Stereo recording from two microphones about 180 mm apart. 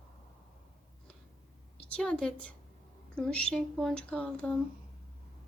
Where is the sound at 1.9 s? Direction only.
5° left (ahead or behind).